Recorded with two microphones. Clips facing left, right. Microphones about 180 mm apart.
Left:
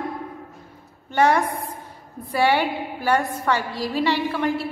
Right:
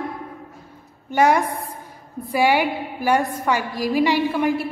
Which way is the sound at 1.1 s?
10° right (ahead or behind).